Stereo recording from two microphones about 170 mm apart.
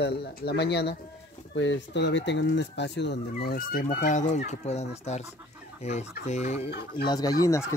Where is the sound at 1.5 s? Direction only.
90° left; by 6.7 s 40° left (ahead or behind).